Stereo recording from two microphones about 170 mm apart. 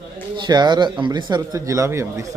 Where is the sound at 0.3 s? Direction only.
25° right (ahead or behind).